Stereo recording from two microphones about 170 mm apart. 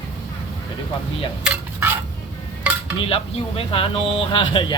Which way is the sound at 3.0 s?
35° left (ahead or behind).